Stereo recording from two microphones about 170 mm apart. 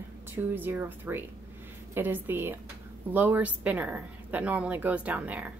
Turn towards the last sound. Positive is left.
turn(degrees=-10)  # may be behind; listen again after turning